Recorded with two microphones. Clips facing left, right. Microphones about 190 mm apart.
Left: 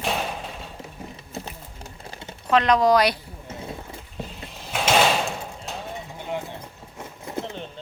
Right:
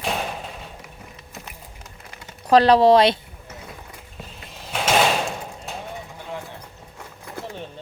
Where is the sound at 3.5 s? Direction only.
25° left (ahead or behind).